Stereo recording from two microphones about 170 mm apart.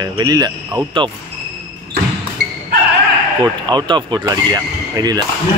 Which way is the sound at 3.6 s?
25° right (ahead or behind).